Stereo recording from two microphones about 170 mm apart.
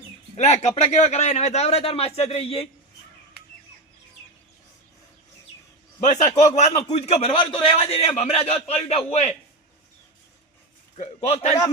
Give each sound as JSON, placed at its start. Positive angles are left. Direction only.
{"t": 0.3, "sound": "a man's voice", "side_deg": 45}
{"t": 6.0, "sound": "a man's voice", "side_deg": 45}
{"t": 10.9, "sound": "a man's voice", "side_deg": 40}